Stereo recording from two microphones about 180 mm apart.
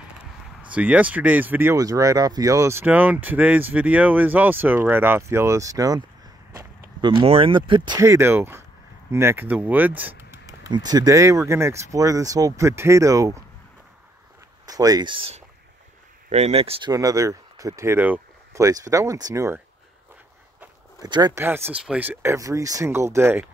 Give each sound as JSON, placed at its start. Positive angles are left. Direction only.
{"t": 0.2, "sound": "speech", "side_deg": -5}
{"t": 6.5, "sound": "a sound", "side_deg": -15}
{"t": 7.1, "sound": "speech", "side_deg": -30}
{"t": 14.7, "sound": "speech", "side_deg": -20}
{"t": 16.9, "sound": "speech", "side_deg": -20}
{"t": 21.0, "sound": "speech", "side_deg": -20}